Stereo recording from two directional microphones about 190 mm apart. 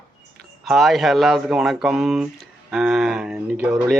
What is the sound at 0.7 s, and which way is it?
A woman's voice, centre (ahead or behind).